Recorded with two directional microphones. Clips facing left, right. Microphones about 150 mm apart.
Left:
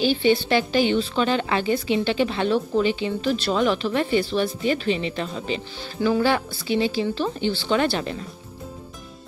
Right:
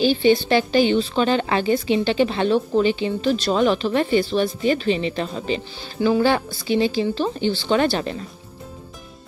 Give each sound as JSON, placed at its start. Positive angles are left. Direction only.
{"t": 0.0, "sound": "a woman's voice", "side_deg": -35}
{"t": 6.0, "sound": "a woman's voice", "side_deg": -30}